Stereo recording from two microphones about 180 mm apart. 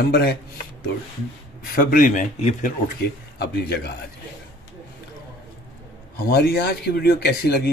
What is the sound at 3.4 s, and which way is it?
Speech, 65° left (ahead or behind).